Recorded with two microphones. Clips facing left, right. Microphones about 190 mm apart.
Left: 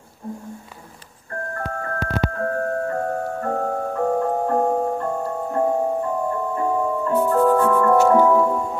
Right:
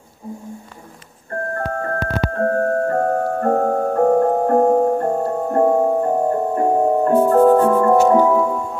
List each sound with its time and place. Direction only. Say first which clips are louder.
1.5 s music: right 5 dB; 40° right (ahead or behind)
7.3 s music: right 4 dB; 35° right (ahead or behind); by 8.5 s 15° right (ahead or behind)
8.5 s music: even; centre (ahead or behind)